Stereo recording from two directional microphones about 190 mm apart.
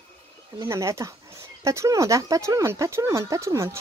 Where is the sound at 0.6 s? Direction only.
15° right (ahead or behind).